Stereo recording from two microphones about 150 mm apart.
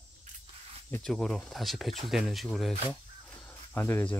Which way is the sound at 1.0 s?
5° left (ahead or behind).